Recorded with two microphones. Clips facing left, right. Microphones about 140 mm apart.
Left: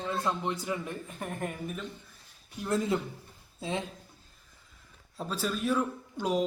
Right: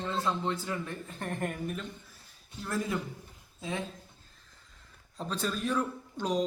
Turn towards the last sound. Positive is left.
turn(degrees=10)  # may be behind; listen again after turning